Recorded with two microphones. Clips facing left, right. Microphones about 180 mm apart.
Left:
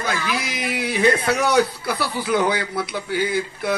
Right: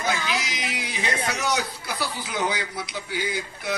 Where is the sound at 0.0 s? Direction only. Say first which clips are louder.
Left 2 dB; 55° left (ahead or behind).